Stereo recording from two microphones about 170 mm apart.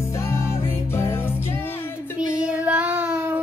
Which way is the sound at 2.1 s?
5° right (ahead or behind).